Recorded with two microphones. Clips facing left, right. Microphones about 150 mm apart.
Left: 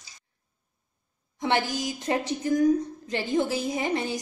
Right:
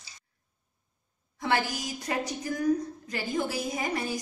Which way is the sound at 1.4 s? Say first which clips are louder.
Left 3 dB; 20° left (ahead or behind).